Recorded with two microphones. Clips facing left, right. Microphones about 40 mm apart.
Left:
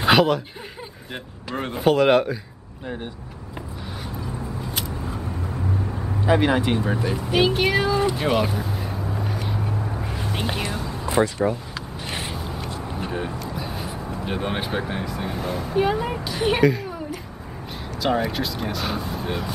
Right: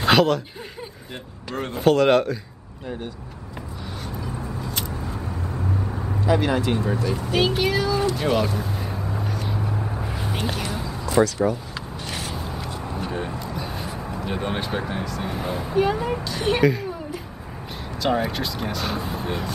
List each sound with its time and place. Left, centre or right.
0.0 s a sound: centre
1.5 s speech: centre
6.2 s speech: left
7.7 s a sound: left
8.0 s speech: centre
8.6 s vehicle: centre
9.3 s vehicle: centre
9.8 s vehicle: centre
10.3 s whispering: centre
10.9 s a sound: left
12.4 s a sound: centre
15.2 s speech: centre
15.7 s speech: centre